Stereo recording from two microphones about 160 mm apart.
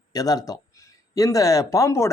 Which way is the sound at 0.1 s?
25° left (ahead or behind).